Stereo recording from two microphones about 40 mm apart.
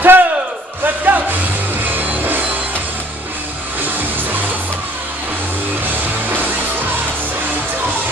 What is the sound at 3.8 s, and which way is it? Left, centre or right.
Music, right.